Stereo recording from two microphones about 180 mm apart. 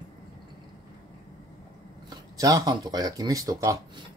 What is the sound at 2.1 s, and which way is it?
Speech, 20° right (ahead or behind).